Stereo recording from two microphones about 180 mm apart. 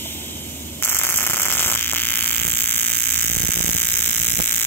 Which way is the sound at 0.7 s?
10° left (ahead or behind).